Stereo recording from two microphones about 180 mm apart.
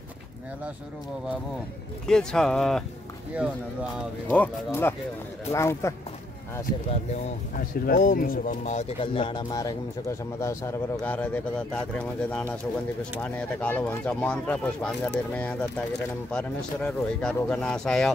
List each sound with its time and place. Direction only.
2.0 s speech: 5° left (ahead or behind)
4.3 s speech: 10° left (ahead or behind)
7.5 s speech: 50° left (ahead or behind); by 18.1 s 5° left (ahead or behind)